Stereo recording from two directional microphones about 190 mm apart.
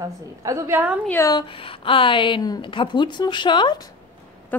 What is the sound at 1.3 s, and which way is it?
A woman's voice, 30° left (ahead or behind).